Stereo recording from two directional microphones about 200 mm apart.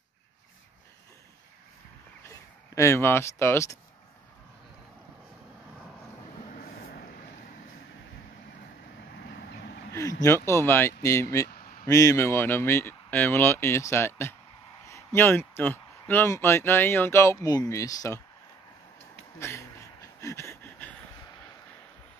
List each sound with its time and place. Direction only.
2.2 s speech: 15° left (ahead or behind)
6.5 s vehicle: 45° left (ahead or behind)
10.2 s speech: 15° left (ahead or behind)
19.4 s a sound: 15° left (ahead or behind)